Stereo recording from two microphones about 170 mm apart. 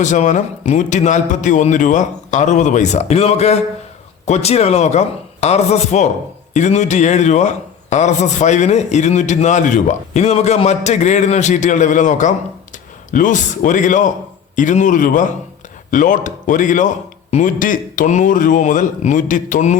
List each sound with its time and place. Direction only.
0.0 s a man's voice: 45° left (ahead or behind)